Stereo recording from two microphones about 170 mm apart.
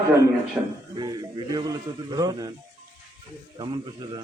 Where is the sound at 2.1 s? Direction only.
20° right (ahead or behind).